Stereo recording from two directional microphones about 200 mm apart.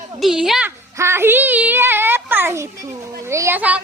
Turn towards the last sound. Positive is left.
turn(degrees=-10)  # may be behind; listen again after turning